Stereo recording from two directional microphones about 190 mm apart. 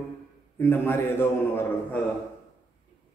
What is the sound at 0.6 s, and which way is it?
A man's voice, 10° left (ahead or behind).